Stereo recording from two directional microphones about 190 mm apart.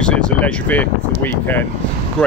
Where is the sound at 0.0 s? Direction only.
5° left (ahead or behind).